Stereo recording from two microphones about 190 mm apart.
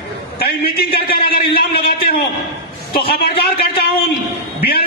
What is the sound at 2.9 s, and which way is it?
Speech, 55° left (ahead or behind).